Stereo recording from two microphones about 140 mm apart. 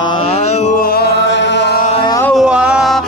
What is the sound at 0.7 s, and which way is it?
Music, 90° left.